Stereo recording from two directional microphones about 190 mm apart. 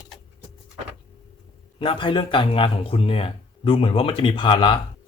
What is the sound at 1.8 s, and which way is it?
Speech, 30° left (ahead or behind).